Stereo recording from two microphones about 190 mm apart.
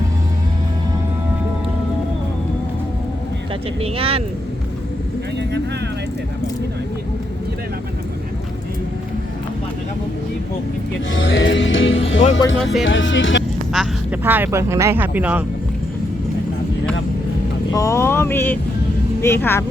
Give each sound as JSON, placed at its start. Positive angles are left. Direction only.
{"t": 3.8, "sound": "speech", "side_deg": -30}
{"t": 11.1, "sound": "music", "side_deg": 80}
{"t": 12.8, "sound": "speech", "side_deg": 80}
{"t": 13.7, "sound": "speech", "side_deg": -10}
{"t": 17.7, "sound": "speech", "side_deg": 15}